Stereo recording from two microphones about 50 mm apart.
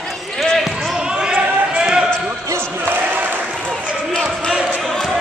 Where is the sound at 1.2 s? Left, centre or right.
Centre.